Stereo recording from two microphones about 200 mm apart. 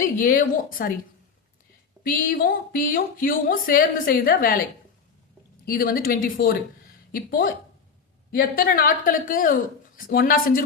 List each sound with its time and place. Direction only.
0.0 s a woman's voice: 45° left (ahead or behind)
2.0 s a woman's voice: 45° left (ahead or behind)
5.6 s a woman's voice: 50° left (ahead or behind)